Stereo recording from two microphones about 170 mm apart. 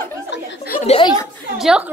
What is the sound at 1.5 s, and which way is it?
Speech, 5° right (ahead or behind).